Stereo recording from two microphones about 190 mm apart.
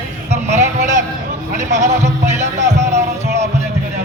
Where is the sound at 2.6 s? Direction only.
65° right (ahead or behind).